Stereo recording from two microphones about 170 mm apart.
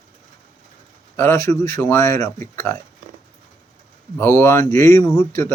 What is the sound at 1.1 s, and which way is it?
Speech, 15° left (ahead or behind).